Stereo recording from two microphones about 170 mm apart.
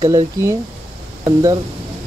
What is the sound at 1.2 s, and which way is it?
Speech, 20° right (ahead or behind).